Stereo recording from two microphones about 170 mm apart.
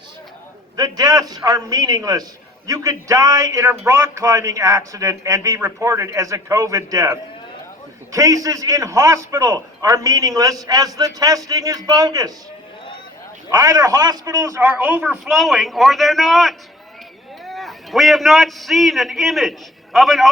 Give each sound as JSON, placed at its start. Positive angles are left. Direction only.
{"t": 0.8, "sound": "a man's voice", "side_deg": -20}
{"t": 13.5, "sound": "a man's voice", "side_deg": -20}
{"t": 15.3, "sound": "a man's voice", "side_deg": 0}